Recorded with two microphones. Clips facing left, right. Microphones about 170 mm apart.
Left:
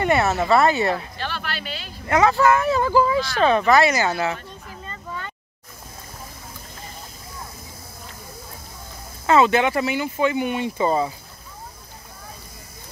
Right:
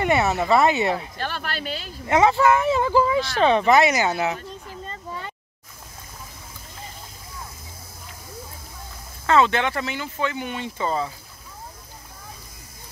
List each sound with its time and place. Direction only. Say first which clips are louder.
0.0 s speech: left 1 dB; 15° right (ahead or behind)
1.1 s speech: even; 45° right (ahead or behind)
2.0 s speech: even; 20° right (ahead or behind)
4.6 s a sound: right 1 dB; 30° right (ahead or behind)
9.2 s speech: left 2 dB; 10° left (ahead or behind)